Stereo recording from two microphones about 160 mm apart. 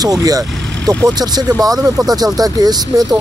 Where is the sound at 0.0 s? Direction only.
25° right (ahead or behind).